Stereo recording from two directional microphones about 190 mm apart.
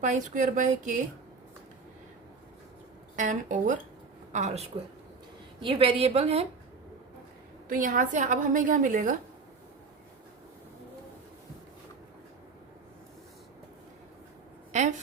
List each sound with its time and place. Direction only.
0.0 s speech: 40° right (ahead or behind)
3.2 s a woman's voice: 40° right (ahead or behind)
7.7 s a woman's voice: 45° right (ahead or behind)
14.7 s a sound: 40° right (ahead or behind)